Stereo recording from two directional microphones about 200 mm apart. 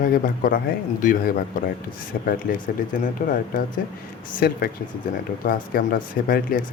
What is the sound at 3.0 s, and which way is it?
Speech, 40° left (ahead or behind).